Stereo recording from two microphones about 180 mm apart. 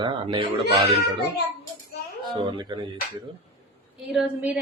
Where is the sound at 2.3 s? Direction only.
25° right (ahead or behind).